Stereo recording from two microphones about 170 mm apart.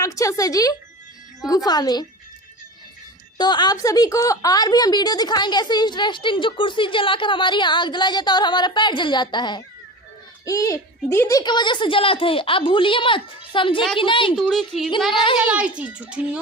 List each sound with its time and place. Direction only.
0.0 s a woman's voice: 20° left (ahead or behind)
3.3 s a woman's voice: 25° left (ahead or behind)
14.3 s speech: centre (ahead or behind)
15.1 s speech: 30° left (ahead or behind)
15.4 s a child's voice: 5° right (ahead or behind)